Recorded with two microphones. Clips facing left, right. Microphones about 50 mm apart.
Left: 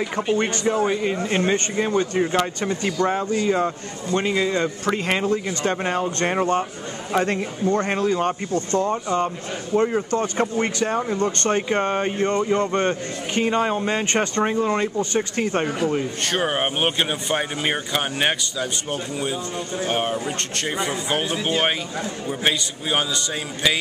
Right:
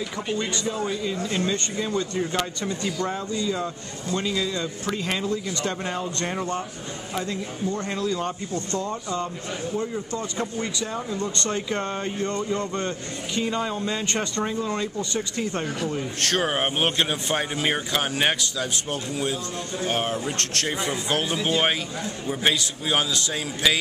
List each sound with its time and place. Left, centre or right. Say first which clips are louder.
0.4 s speech: left 5 dB; left
7.2 s speech: left 8 dB; left
9.8 s speech: left 11 dB; left
15.6 s speech: left 5 dB; left
16.2 s a man's voice: left 1 dB; centre